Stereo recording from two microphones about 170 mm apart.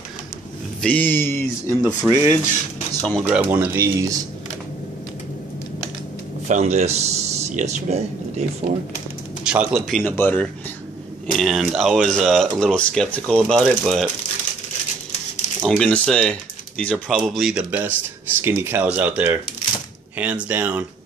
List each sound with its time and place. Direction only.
0.7 s speech: 5° left (ahead or behind)
2.0 s speech: 20° right (ahead or behind)
3.0 s speech: 5° left (ahead or behind)
3.3 s speech: 10° right (ahead or behind)
6.4 s speech: 40° right (ahead or behind)
9.4 s speech: 5° right (ahead or behind)
10.1 s speech: 10° left (ahead or behind)
11.3 s speech: centre (ahead or behind)
15.6 s speech: 5° left (ahead or behind); by 20.8 s 10° right (ahead or behind)